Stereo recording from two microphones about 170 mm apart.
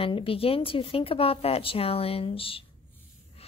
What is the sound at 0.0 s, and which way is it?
A woman's voice, 30° left (ahead or behind).